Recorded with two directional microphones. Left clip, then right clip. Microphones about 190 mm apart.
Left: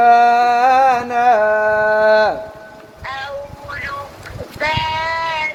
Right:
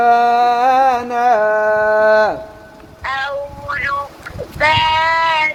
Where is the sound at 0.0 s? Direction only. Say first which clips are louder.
Left 1 dB; 25° right (ahead or behind).